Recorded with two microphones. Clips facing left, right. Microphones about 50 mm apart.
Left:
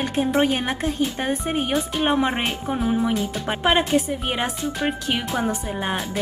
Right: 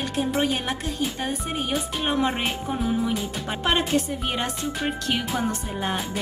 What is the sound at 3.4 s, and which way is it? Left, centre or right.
A woman's voice, centre.